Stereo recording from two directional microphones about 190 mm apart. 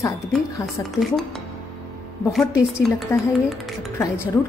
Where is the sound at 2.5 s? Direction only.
15° left (ahead or behind).